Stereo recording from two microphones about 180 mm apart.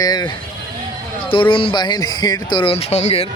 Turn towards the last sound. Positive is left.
turn(degrees=35)  # may be behind; listen again after turning